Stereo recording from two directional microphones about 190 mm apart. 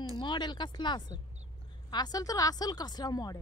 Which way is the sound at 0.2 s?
25° left (ahead or behind).